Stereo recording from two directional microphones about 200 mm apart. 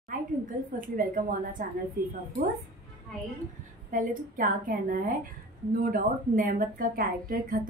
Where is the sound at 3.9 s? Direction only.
40° right (ahead or behind).